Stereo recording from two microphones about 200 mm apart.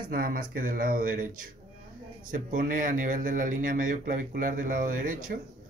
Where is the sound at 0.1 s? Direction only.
45° right (ahead or behind).